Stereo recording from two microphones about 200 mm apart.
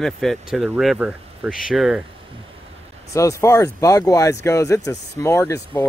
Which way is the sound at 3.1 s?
15° left (ahead or behind).